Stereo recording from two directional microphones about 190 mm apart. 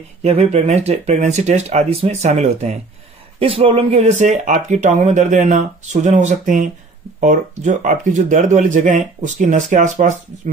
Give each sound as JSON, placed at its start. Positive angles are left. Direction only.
{"t": 0.2, "sound": "speech", "side_deg": -35}